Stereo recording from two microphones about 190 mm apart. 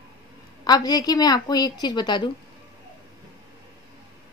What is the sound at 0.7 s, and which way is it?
Speech, 20° left (ahead or behind).